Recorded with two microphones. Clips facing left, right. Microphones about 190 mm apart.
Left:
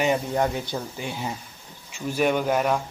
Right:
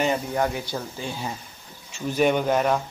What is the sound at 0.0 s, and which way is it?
Speech, 15° left (ahead or behind).